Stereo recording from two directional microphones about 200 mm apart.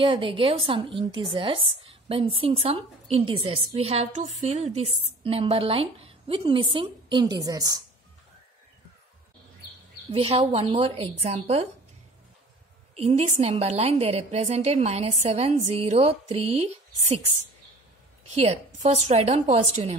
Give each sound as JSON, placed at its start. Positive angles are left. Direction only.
{"t": 0.0, "sound": "a woman's voice", "side_deg": -25}
{"t": 10.1, "sound": "a woman's voice", "side_deg": -30}
{"t": 12.9, "sound": "a woman's voice", "side_deg": -35}
{"t": 18.3, "sound": "a woman's voice", "side_deg": -35}